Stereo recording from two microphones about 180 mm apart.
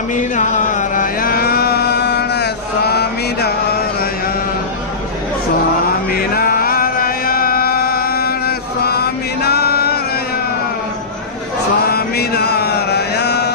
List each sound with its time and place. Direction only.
0.1 s chant: 45° left (ahead or behind); by 3.5 s 65° left (ahead or behind)
6.0 s chant: 55° left (ahead or behind)
11.9 s mantra: 60° left (ahead or behind)